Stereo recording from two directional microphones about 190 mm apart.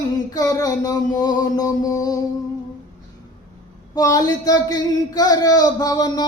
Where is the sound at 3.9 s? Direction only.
20° left (ahead or behind).